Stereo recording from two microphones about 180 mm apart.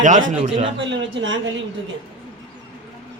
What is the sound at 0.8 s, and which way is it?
Speech, 90° right.